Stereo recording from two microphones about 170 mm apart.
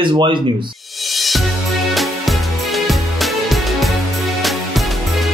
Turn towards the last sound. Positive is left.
turn(degrees=0)  # may be behind; listen again after turning